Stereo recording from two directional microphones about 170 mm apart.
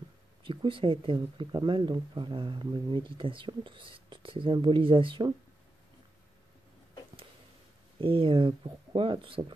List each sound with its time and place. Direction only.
0.5 s speech: 30° right (ahead or behind)
8.0 s speech: 30° right (ahead or behind)